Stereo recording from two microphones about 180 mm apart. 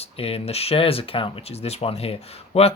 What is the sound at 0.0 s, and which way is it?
Speech, 35° left (ahead or behind).